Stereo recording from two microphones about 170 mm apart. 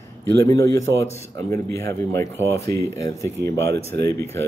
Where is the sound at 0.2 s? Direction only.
15° left (ahead or behind).